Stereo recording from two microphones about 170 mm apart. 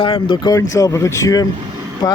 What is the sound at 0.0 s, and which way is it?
Speech, 30° left (ahead or behind).